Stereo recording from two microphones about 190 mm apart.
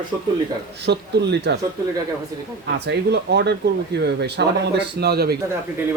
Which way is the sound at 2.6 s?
60° right (ahead or behind).